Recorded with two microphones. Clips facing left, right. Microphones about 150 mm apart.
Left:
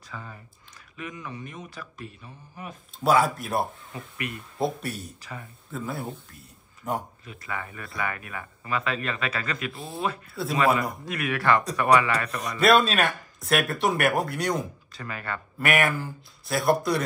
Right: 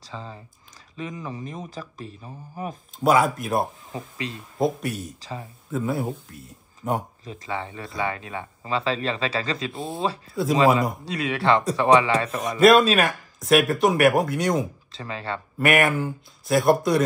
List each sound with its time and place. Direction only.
0.1 s speech: 25° right (ahead or behind)
3.0 s speech: centre (ahead or behind)
3.9 s speech: 25° right (ahead or behind)
4.8 s speech: centre (ahead or behind)
6.8 s speech: 20° right (ahead or behind)
12.5 s speech: centre (ahead or behind)
14.9 s speech: 25° right (ahead or behind)
15.7 s speech: centre (ahead or behind)